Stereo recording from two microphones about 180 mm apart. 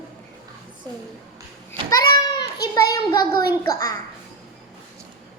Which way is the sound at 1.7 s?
20° left (ahead or behind).